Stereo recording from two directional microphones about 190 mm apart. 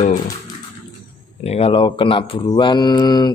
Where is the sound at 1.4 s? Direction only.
30° left (ahead or behind).